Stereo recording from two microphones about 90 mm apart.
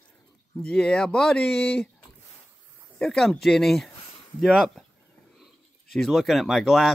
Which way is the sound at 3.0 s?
5° left (ahead or behind).